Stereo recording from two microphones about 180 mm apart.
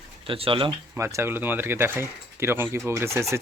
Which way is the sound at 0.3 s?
30° right (ahead or behind).